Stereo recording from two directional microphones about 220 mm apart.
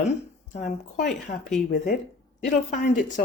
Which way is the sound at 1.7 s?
40° left (ahead or behind).